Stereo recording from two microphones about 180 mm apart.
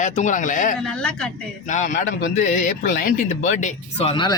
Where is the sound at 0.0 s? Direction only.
45° left (ahead or behind).